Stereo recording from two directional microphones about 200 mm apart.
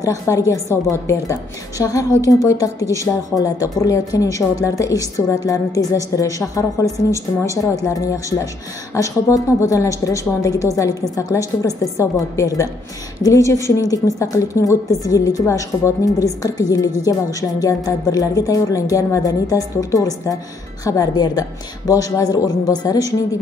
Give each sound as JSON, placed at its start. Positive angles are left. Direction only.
{"t": 0.0, "sound": "a woman's voice", "side_deg": 15}